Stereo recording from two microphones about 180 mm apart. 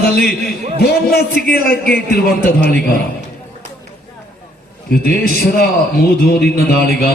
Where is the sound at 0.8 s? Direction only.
60° left (ahead or behind).